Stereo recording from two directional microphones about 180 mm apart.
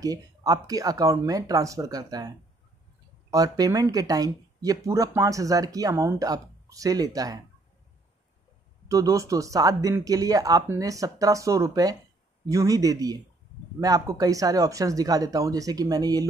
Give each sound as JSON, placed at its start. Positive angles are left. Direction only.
{"t": 0.0, "sound": "speech", "side_deg": -20}
{"t": 8.8, "sound": "speech", "side_deg": -20}